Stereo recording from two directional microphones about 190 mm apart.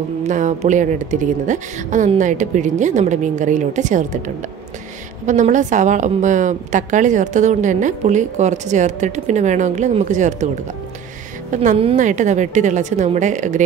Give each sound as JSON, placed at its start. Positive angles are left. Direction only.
{"t": 0.3, "sound": "a woman's voice", "side_deg": -40}
{"t": 5.2, "sound": "a woman's voice", "side_deg": -40}
{"t": 11.5, "sound": "a woman's voice", "side_deg": -40}